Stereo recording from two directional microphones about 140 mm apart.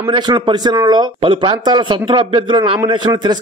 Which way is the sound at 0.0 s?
35° right (ahead or behind).